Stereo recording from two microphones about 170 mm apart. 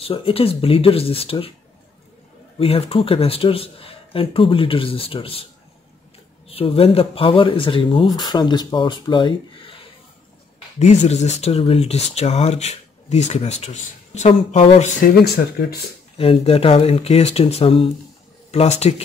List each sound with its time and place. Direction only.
0.0 s speech: 35° left (ahead or behind)
2.6 s speech: 35° left (ahead or behind)
6.5 s speech: 35° left (ahead or behind)
10.8 s speech: 45° left (ahead or behind)
16.2 s speech: 35° left (ahead or behind)